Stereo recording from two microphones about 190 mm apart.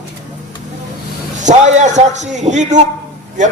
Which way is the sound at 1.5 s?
40° right (ahead or behind).